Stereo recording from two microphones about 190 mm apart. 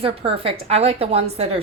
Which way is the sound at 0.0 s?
30° right (ahead or behind).